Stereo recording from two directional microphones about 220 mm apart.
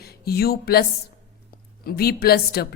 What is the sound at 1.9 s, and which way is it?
Speech, 45° left (ahead or behind).